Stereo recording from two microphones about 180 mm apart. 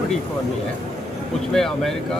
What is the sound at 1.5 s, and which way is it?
Speech, centre (ahead or behind).